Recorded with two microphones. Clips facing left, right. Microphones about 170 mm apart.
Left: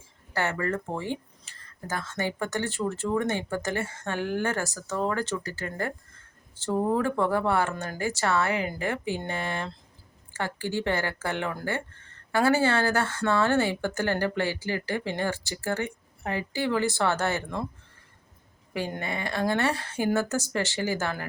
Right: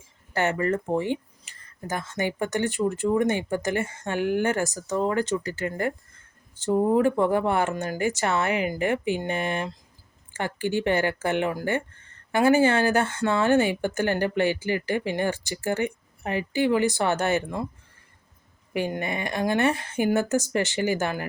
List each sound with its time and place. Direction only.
0.3 s speech: 20° right (ahead or behind)
18.7 s speech: 15° right (ahead or behind)